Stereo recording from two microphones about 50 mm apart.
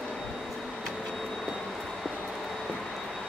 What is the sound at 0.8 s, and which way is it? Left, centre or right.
Vehicle, centre.